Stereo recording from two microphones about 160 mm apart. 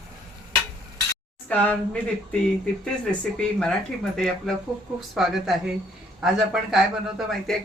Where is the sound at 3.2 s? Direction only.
5° left (ahead or behind).